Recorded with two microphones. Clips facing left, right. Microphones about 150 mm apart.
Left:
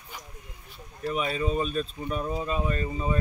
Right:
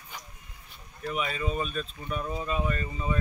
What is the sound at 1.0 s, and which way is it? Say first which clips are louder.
Speech: left 3 dB; 35° left (ahead or behind).